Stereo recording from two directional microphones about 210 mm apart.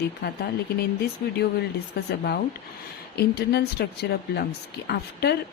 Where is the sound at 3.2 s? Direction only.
50° left (ahead or behind).